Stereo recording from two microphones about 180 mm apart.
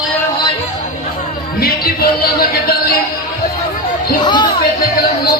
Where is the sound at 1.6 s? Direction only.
55° left (ahead or behind).